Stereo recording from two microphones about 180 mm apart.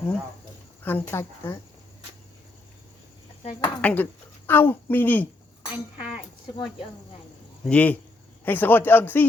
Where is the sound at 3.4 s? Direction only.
30° left (ahead or behind).